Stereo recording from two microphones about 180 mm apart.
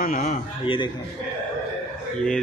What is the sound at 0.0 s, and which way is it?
Speech, 50° left (ahead or behind).